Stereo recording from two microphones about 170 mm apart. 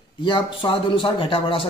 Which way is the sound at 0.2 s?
30° left (ahead or behind).